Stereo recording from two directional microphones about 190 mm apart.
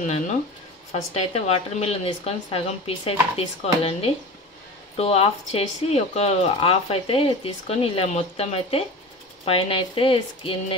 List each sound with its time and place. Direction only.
1.1 s speech: 35° left (ahead or behind)